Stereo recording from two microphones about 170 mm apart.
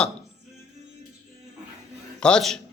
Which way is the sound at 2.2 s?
5° left (ahead or behind).